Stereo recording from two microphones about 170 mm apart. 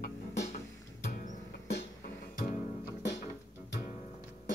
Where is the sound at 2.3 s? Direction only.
50° left (ahead or behind).